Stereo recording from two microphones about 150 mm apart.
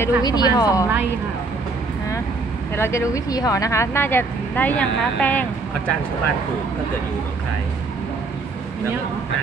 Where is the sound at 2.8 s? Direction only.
20° left (ahead or behind).